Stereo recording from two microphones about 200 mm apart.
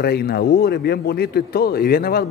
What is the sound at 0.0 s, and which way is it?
A man's voice, 50° left (ahead or behind).